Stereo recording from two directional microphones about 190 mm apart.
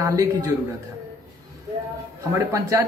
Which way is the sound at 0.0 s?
20° right (ahead or behind).